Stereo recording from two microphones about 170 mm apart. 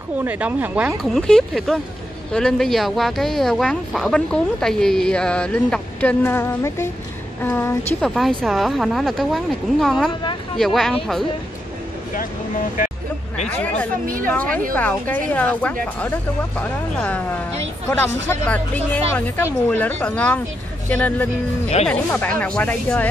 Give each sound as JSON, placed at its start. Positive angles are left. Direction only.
{"t": 0.2, "sound": "speech", "side_deg": -10}
{"t": 13.5, "sound": "speech", "side_deg": 10}
{"t": 14.0, "sound": "speech", "side_deg": -55}
{"t": 14.3, "sound": "speech", "side_deg": 10}
{"t": 19.1, "sound": "speech", "side_deg": 10}